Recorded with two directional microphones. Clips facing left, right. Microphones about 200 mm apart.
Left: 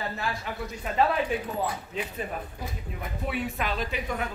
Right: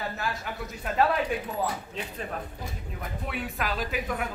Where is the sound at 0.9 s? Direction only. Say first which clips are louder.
Even; centre (ahead or behind).